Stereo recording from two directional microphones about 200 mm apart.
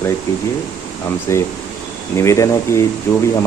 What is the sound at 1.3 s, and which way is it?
Speech, 15° left (ahead or behind).